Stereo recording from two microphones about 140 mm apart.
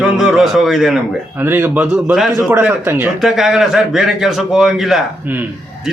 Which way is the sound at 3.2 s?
Centre (ahead or behind).